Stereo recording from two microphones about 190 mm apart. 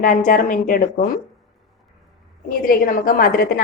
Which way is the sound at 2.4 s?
45° left (ahead or behind).